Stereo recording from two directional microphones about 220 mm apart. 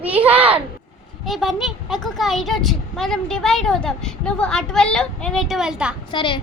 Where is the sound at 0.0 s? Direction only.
5° right (ahead or behind).